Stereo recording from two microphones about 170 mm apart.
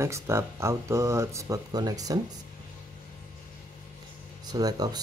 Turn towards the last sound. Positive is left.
turn(degrees=-25)  # may be behind; listen again after turning